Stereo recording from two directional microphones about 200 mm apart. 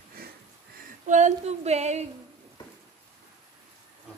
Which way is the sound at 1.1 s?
35° right (ahead or behind).